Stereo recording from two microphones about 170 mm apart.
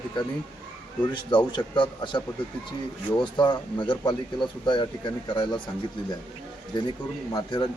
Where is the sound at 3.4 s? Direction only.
25° left (ahead or behind).